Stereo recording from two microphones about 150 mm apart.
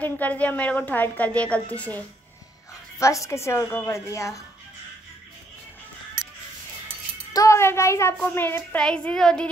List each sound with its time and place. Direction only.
0.0 s a woman's voice: 10° left (ahead or behind)
3.0 s a woman's voice: 20° left (ahead or behind)
7.3 s a woman's voice: 20° left (ahead or behind)